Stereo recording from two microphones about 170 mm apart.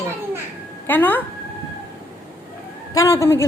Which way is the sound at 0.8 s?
10° left (ahead or behind).